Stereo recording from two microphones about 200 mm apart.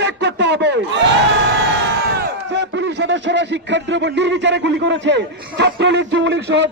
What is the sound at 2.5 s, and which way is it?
Speech, 60° right (ahead or behind).